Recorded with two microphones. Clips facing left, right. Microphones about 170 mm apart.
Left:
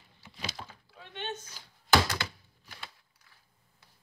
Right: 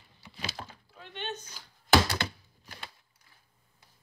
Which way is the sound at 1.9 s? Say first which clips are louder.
Right 2 dB; 55° right (ahead or behind).